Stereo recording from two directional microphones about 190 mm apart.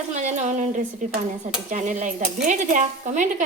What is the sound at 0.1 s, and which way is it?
Speech, 40° right (ahead or behind).